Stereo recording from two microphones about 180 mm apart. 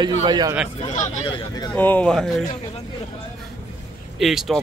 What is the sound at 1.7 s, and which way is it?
Speech, 10° left (ahead or behind).